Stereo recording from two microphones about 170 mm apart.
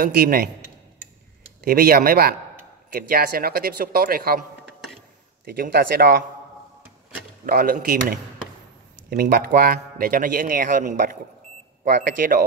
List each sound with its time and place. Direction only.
0.0 s a man's voice: 60° right (ahead or behind)
1.6 s a man's voice: 60° right (ahead or behind)
5.4 s a man's voice: 60° right (ahead or behind)
7.4 s a man's voice: 60° right (ahead or behind)